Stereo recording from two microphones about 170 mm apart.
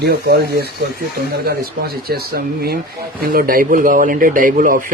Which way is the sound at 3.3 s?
55° right (ahead or behind).